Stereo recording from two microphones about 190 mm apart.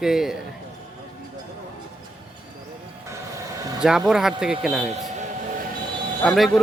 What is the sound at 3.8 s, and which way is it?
Speech, 5° right (ahead or behind).